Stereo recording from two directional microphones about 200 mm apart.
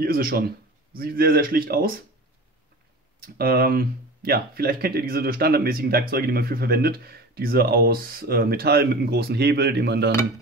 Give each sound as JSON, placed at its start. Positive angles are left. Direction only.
{"t": 0.0, "sound": "speech", "side_deg": -50}
{"t": 3.2, "sound": "speech", "side_deg": -50}